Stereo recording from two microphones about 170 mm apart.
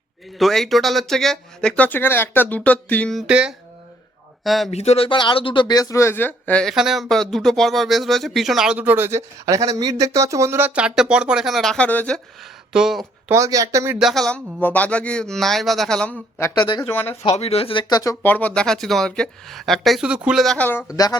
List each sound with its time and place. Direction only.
0.3 s speech: centre (ahead or behind)
4.7 s speech: 40° left (ahead or behind); by 13.3 s centre (ahead or behind)
13.3 s speech: 20° right (ahead or behind)
14.0 s speech: centre (ahead or behind)
16.4 s speech: 25° left (ahead or behind)
17.2 s speech: 35° left (ahead or behind); by 20.8 s 10° left (ahead or behind)
20.9 s speech: 20° left (ahead or behind)